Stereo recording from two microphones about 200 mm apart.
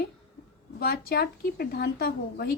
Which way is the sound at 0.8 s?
50° left (ahead or behind).